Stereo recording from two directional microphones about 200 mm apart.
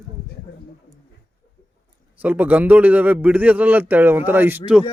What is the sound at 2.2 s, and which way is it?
A man's voice, 10° right (ahead or behind).